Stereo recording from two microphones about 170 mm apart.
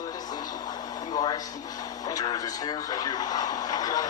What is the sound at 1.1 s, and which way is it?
Speech, 25° left (ahead or behind).